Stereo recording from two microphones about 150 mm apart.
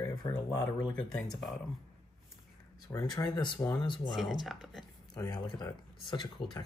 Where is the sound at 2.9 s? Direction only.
25° left (ahead or behind).